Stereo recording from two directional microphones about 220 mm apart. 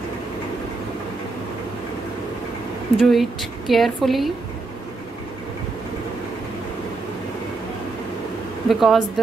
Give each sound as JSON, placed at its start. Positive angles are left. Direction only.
{"t": 3.0, "sound": "a woman's voice", "side_deg": 0}
{"t": 8.6, "sound": "a woman's voice", "side_deg": 0}